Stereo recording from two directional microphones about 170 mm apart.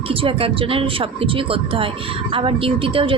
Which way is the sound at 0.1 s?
30° right (ahead or behind).